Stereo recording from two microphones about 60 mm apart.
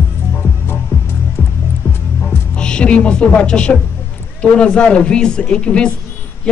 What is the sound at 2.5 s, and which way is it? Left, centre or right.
A man's voice, centre.